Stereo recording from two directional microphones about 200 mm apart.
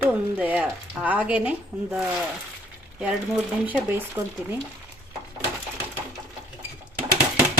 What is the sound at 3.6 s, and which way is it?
Speech, 10° right (ahead or behind).